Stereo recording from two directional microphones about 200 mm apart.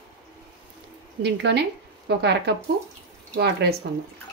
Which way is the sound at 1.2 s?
60° right (ahead or behind).